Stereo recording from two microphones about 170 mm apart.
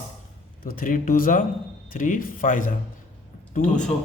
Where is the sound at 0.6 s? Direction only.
55° left (ahead or behind).